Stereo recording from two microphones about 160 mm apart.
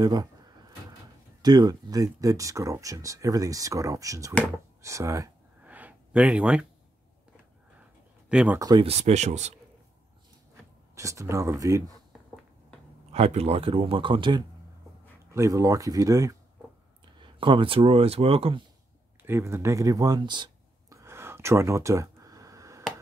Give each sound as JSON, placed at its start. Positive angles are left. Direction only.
{"t": 0.0, "sound": "a sound", "side_deg": -25}
{"t": 1.4, "sound": "speech", "side_deg": -25}
{"t": 5.6, "sound": "a sound", "side_deg": -10}
{"t": 8.3, "sound": "speech", "side_deg": -5}
{"t": 8.5, "sound": "speech", "side_deg": -25}
{"t": 8.8, "sound": "speech", "side_deg": -40}
{"t": 11.0, "sound": "speech", "side_deg": -20}
{"t": 13.1, "sound": "speech", "side_deg": -40}
{"t": 15.3, "sound": "speech", "side_deg": -20}
{"t": 17.0, "sound": "speech", "side_deg": -30}
{"t": 19.2, "sound": "speech", "side_deg": -15}
{"t": 21.0, "sound": "a sound", "side_deg": -15}